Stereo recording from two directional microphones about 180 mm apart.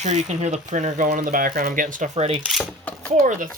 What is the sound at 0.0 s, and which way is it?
Speech, 40° right (ahead or behind).